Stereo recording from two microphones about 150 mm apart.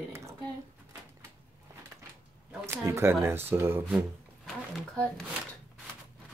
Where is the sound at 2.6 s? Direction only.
20° right (ahead or behind).